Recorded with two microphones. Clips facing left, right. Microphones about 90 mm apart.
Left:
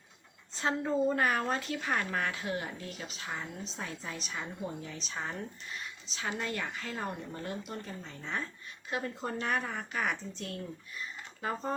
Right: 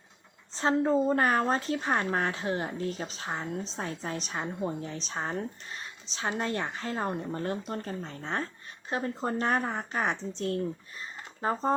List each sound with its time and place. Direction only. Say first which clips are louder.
0.5 s a woman's voice: right 6 dB; 35° right (ahead or behind)